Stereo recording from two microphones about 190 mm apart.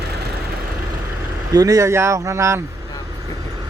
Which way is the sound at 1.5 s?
20° right (ahead or behind).